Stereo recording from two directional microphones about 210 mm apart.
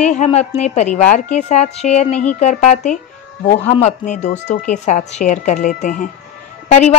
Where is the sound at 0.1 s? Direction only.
35° left (ahead or behind).